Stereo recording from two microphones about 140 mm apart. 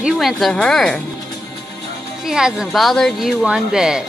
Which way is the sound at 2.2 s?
5° right (ahead or behind).